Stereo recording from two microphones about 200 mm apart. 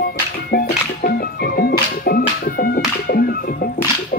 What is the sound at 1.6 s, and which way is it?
Speech, 50° left (ahead or behind).